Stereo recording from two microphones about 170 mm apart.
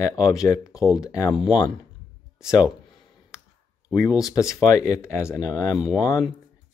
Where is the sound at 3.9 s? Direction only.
20° left (ahead or behind).